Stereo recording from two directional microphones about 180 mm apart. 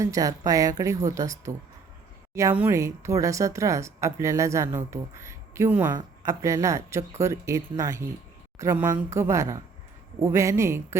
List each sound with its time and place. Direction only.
0.0 s speech: 20° right (ahead or behind)